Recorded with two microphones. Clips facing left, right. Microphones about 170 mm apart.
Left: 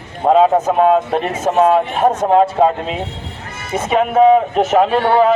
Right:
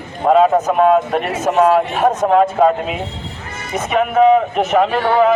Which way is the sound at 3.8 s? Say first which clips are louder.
Left 1 dB; 30° left (ahead or behind).